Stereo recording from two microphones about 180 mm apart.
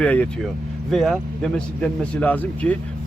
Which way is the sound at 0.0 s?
5° left (ahead or behind).